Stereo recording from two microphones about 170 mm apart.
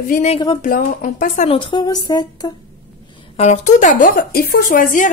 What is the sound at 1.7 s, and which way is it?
Speech, 25° left (ahead or behind).